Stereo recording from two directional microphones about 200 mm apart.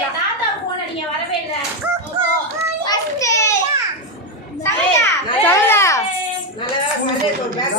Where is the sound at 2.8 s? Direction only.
20° left (ahead or behind).